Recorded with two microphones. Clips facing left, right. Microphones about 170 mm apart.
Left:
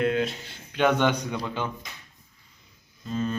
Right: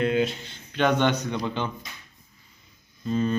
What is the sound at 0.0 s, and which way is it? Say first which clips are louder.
A man's voice: right 1 dB; centre (ahead or behind).